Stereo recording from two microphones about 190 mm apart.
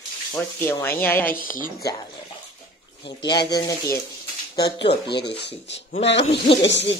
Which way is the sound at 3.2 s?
20° left (ahead or behind).